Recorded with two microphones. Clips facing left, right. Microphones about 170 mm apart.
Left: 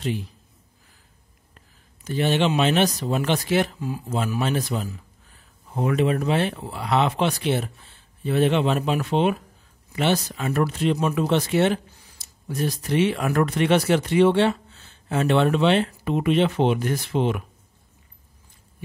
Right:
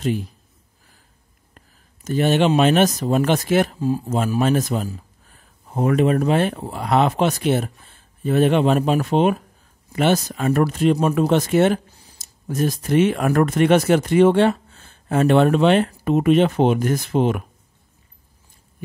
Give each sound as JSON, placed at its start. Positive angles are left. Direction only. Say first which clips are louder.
{"t": 2.0, "sound": "speech", "louder": "right 4 dB", "side_deg": -45}